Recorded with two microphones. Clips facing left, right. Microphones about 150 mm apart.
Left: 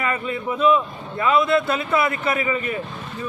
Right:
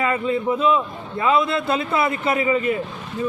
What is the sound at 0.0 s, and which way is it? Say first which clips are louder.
A man's voice: right 4 dB; 25° right (ahead or behind).